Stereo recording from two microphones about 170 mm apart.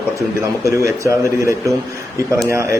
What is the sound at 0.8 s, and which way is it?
Speech, 20° right (ahead or behind).